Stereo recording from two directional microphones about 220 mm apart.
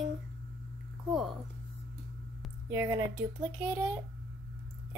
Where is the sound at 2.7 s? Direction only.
10° right (ahead or behind).